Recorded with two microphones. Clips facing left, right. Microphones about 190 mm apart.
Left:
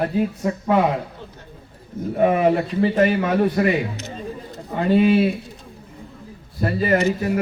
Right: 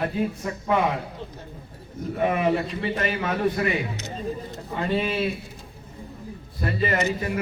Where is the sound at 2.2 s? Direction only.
40° left (ahead or behind).